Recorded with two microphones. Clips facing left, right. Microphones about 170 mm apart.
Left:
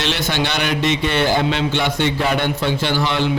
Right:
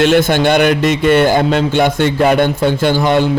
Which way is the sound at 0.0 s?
50° right (ahead or behind).